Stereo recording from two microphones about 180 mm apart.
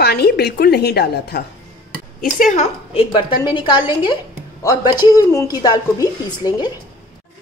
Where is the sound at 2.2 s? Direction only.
50° left (ahead or behind); by 6.7 s 25° left (ahead or behind).